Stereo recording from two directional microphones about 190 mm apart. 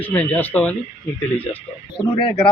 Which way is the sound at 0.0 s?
10° left (ahead or behind).